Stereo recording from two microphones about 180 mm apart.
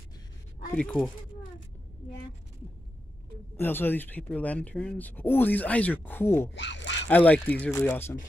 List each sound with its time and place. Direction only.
0.7 s speech: 5° left (ahead or behind)
3.5 s speech: 10° left (ahead or behind)
6.5 s speech: 80° left
7.1 s speech: 10° left (ahead or behind)